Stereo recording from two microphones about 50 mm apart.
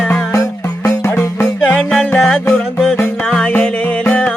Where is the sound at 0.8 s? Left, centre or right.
Left.